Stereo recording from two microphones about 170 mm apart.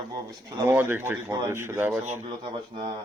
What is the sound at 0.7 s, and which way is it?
Speech, 10° right (ahead or behind).